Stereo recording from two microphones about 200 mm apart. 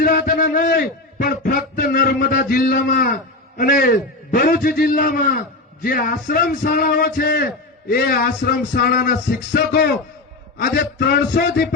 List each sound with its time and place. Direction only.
0.0 s a man's voice: 45° left (ahead or behind)